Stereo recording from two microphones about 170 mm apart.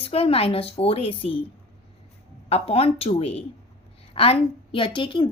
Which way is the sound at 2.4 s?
35° left (ahead or behind).